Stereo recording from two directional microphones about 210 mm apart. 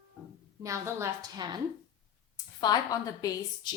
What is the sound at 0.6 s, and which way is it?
Speech, 15° right (ahead or behind).